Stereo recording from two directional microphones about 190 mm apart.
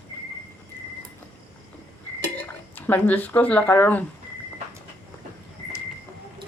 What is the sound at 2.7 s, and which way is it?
Speech, 10° left (ahead or behind).